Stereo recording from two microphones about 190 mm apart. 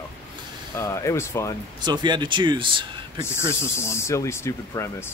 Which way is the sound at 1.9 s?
25° right (ahead or behind).